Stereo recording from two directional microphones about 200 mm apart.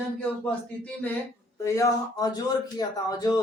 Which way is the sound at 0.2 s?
5° left (ahead or behind).